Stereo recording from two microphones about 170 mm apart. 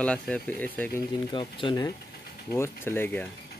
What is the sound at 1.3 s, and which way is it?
Speech, 30° left (ahead or behind).